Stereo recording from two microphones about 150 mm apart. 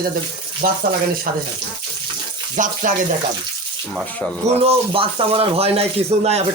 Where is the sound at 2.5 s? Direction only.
60° right (ahead or behind).